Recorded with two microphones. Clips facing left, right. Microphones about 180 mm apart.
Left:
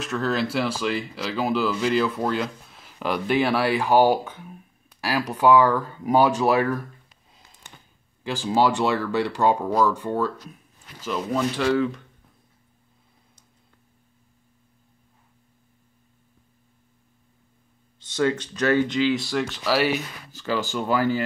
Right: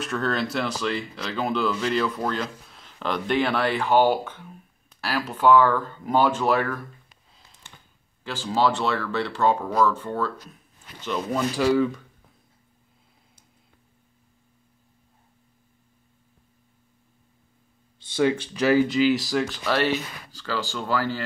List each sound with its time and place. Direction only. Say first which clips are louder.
0.0 s speech: left 1 dB; centre (ahead or behind)
8.2 s speech: left 2 dB; 15° left (ahead or behind)
11.1 s speech: left 1 dB; centre (ahead or behind)
18.2 s speech: right 1 dB; 10° right (ahead or behind); by 20.0 s 5° left (ahead or behind)
20.3 s speech: left 4 dB; 20° left (ahead or behind)